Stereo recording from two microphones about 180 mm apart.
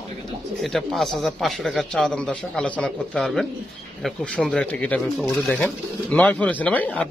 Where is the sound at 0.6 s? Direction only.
Centre (ahead or behind).